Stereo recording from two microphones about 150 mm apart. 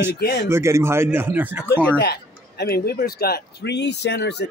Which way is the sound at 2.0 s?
90° left.